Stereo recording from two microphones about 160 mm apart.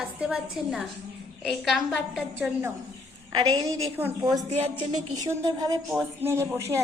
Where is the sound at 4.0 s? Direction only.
15° right (ahead or behind).